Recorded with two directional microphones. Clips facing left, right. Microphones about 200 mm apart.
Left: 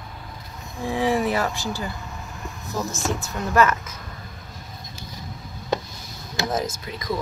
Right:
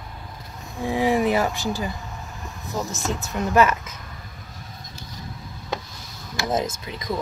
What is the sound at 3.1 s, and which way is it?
Speech, 15° right (ahead or behind).